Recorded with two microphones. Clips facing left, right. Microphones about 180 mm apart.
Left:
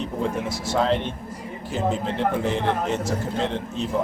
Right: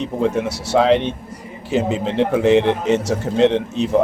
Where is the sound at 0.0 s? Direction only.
80° right.